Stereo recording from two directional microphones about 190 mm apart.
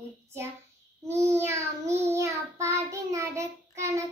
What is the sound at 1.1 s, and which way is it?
A child's voice, 15° right (ahead or behind).